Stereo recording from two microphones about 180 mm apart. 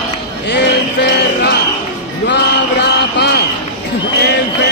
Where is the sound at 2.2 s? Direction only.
70° left (ahead or behind).